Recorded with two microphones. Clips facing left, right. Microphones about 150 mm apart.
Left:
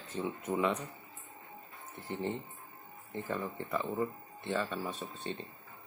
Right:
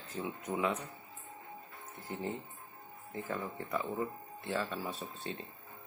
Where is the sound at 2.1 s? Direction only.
Centre (ahead or behind).